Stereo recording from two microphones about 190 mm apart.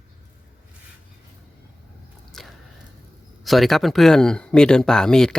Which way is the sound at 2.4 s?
Centre (ahead or behind).